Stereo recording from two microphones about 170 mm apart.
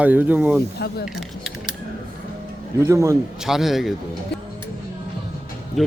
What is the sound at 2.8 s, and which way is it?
Speech, 15° right (ahead or behind).